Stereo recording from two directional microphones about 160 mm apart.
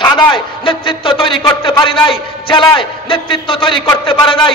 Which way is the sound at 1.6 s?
30° left (ahead or behind).